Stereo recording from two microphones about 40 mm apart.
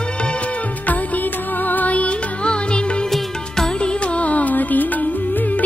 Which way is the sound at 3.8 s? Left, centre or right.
Left.